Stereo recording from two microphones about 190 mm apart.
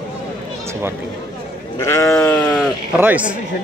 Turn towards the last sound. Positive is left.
turn(degrees=-10)  # may be behind; listen again after turning